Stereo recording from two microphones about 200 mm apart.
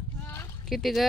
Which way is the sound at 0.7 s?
Centre (ahead or behind).